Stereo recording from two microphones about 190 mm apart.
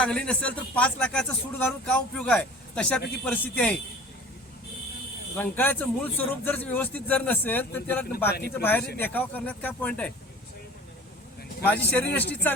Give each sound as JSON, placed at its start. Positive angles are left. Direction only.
{"t": 0.0, "sound": "a man's voice", "side_deg": 5}
{"t": 5.4, "sound": "speech", "side_deg": 10}
{"t": 8.3, "sound": "speech", "side_deg": 55}
{"t": 9.0, "sound": "speech", "side_deg": 10}
{"t": 11.6, "sound": "speech", "side_deg": 10}